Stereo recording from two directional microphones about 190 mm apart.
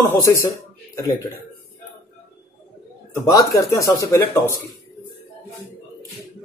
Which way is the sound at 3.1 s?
15° left (ahead or behind).